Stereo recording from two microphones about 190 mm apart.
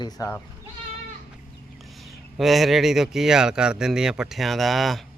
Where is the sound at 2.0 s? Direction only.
Centre (ahead or behind).